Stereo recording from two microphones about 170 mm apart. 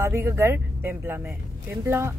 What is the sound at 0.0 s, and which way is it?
Speech, 15° right (ahead or behind).